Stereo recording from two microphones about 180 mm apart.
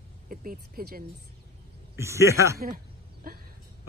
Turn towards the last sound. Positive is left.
turn(degrees=-55)  # may be behind; listen again after turning